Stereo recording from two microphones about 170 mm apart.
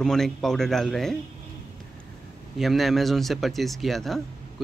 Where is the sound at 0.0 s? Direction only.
Centre (ahead or behind).